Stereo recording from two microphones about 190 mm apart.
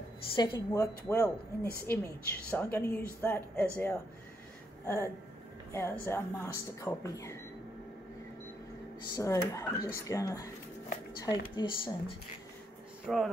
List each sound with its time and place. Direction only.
0.4 s a woman's voice: 20° left (ahead or behind)
4.8 s a sound: 15° left (ahead or behind)
5.7 s a woman's voice: 15° left (ahead or behind)
9.1 s a woman's voice: 15° left (ahead or behind)
13.0 s speech: centre (ahead or behind)